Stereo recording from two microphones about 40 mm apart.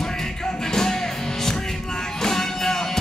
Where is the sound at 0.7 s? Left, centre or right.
Centre.